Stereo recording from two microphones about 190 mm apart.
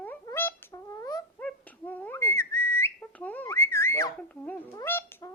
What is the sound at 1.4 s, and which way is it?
Whistle, 10° left (ahead or behind).